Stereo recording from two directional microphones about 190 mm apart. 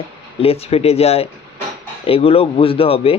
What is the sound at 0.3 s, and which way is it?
Speech, 30° left (ahead or behind).